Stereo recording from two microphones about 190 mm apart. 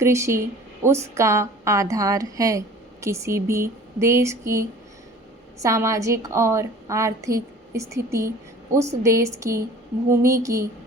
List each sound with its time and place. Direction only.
0.0 s a woman's voice: 15° right (ahead or behind)